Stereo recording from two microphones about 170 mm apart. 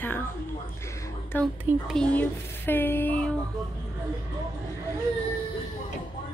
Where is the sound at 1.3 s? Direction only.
10° left (ahead or behind).